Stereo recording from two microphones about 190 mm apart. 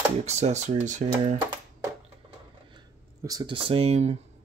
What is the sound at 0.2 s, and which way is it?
Speech, 35° right (ahead or behind).